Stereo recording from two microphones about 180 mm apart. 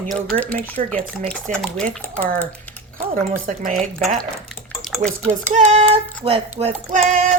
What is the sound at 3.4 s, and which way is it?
Speech, 50° right (ahead or behind).